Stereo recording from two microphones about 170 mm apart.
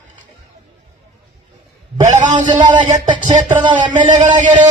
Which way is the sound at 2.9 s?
25° right (ahead or behind).